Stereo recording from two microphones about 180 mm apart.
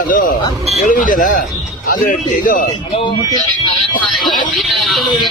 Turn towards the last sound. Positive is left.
turn(degrees=0)  # may be behind; listen again after turning